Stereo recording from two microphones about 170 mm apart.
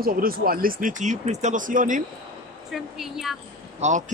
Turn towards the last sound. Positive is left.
turn(degrees=-45)  # may be behind; listen again after turning